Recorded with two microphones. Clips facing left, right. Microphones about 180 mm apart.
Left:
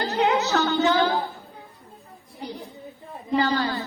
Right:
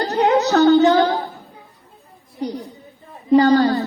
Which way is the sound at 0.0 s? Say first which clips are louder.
Right 6 dB; 40° right (ahead or behind).